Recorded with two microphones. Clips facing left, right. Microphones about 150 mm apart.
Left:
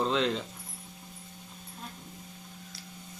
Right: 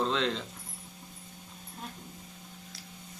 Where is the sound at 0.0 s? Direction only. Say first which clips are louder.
Left 2 dB; 5° left (ahead or behind).